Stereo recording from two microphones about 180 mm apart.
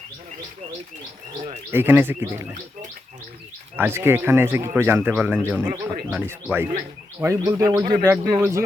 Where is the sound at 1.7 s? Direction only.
10° right (ahead or behind).